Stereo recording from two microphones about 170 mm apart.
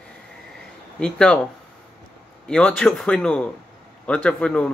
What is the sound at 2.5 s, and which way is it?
Speech, 5° left (ahead or behind).